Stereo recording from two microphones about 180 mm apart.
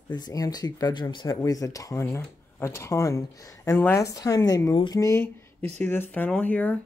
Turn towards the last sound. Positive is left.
turn(degrees=10)  # may be behind; listen again after turning